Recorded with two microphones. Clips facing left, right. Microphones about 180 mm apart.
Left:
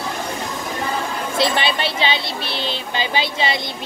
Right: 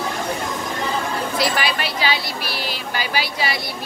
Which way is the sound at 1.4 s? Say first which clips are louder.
Left 4 dB; 25° left (ahead or behind).